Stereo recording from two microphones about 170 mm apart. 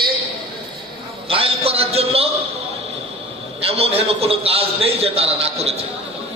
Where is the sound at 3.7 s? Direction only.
35° right (ahead or behind).